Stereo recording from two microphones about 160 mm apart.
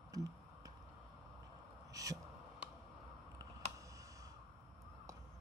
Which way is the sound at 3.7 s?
20° right (ahead or behind).